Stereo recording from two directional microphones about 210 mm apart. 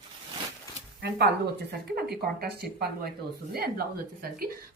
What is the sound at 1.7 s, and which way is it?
A woman's voice, 50° right (ahead or behind).